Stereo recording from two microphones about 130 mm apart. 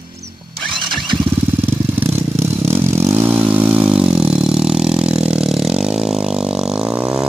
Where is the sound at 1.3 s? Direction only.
15° right (ahead or behind).